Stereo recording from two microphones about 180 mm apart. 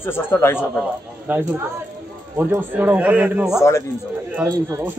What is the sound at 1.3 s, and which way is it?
Speech, 10° right (ahead or behind).